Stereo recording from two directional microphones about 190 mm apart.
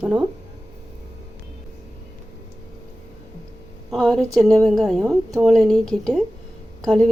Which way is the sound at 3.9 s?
5° left (ahead or behind).